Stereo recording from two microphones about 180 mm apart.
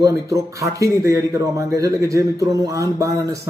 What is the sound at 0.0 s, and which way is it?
A man's voice, 20° right (ahead or behind).